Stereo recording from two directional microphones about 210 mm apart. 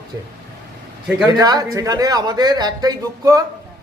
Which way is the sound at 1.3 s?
20° right (ahead or behind).